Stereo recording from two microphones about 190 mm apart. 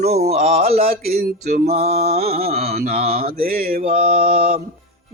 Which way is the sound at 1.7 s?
35° right (ahead or behind).